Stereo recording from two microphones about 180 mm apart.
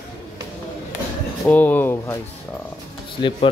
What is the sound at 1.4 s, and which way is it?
Speech, 10° left (ahead or behind).